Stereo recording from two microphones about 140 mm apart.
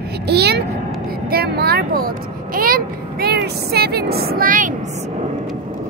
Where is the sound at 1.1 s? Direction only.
90° right; by 5.1 s 55° right (ahead or behind).